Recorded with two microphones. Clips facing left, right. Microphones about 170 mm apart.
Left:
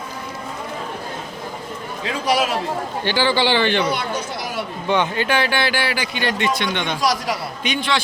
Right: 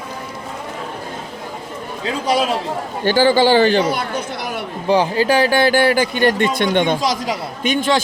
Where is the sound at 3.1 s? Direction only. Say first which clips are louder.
Right 6 dB; 45° right (ahead or behind).